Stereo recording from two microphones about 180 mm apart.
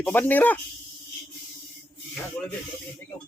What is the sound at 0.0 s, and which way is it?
Speech, 10° left (ahead or behind).